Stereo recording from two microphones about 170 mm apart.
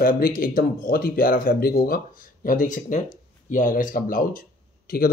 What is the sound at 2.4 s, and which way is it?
Speech, 50° left (ahead or behind).